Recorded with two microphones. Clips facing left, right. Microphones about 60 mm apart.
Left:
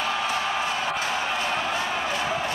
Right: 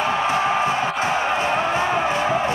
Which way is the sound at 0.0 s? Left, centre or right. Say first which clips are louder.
Right 6 dB; right.